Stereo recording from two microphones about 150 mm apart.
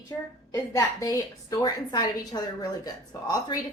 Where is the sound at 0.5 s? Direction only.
20° left (ahead or behind).